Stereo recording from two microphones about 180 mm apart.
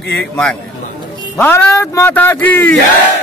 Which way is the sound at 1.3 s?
10° left (ahead or behind).